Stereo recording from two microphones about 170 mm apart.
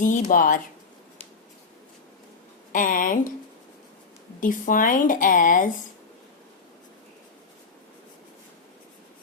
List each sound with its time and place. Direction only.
0.0 s speech: 50° left (ahead or behind)
2.7 s speech: 50° left (ahead or behind)
4.4 s speech: 50° left (ahead or behind)